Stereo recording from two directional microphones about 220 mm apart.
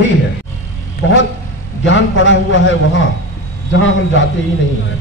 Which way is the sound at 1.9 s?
60° left (ahead or behind).